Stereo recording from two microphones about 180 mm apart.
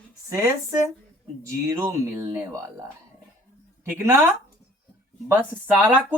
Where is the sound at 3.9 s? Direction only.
10° right (ahead or behind).